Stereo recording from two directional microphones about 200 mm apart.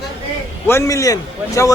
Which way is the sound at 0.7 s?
15° left (ahead or behind).